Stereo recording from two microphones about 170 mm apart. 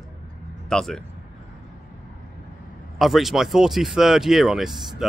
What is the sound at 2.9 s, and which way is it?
Speech, centre (ahead or behind).